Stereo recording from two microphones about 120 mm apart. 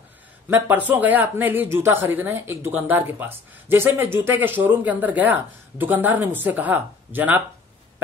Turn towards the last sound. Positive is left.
turn(degrees=-15)  # may be behind; listen again after turning